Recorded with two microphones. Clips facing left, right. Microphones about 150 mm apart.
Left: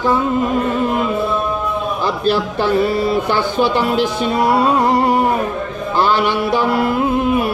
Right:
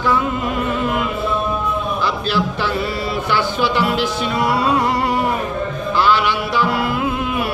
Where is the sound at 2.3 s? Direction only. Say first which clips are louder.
Left 4 dB; 45° left (ahead or behind).